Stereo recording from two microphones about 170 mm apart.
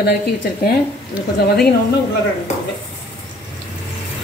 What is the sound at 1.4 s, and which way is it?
Speech, 65° left (ahead or behind).